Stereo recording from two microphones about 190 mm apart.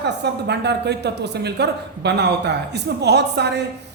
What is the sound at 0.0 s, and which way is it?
A woman's voice, 60° right (ahead or behind).